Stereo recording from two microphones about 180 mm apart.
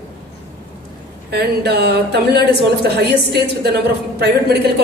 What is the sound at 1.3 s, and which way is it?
A woman's voice, 65° right (ahead or behind).